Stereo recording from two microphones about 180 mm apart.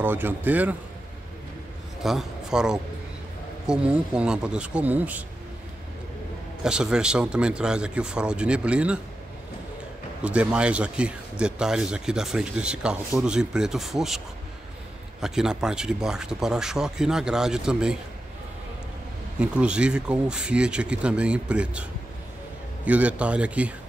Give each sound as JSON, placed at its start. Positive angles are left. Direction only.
{"t": 0.0, "sound": "speech", "side_deg": -10}
{"t": 2.0, "sound": "a man's voice", "side_deg": 0}
{"t": 6.6, "sound": "speech", "side_deg": -5}
{"t": 10.2, "sound": "speech", "side_deg": -5}
{"t": 19.4, "sound": "speech", "side_deg": -5}
{"t": 22.8, "sound": "speech", "side_deg": -10}